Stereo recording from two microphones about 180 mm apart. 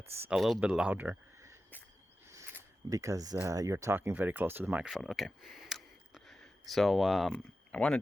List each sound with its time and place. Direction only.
0.2 s speech: 5° right (ahead or behind)
2.3 s zipper: 15° right (ahead or behind)
3.3 s speech: 20° right (ahead or behind); by 8.0 s 5° left (ahead or behind)